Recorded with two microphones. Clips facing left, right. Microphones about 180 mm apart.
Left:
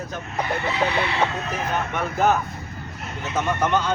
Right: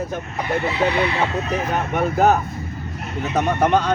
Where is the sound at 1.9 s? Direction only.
40° right (ahead or behind).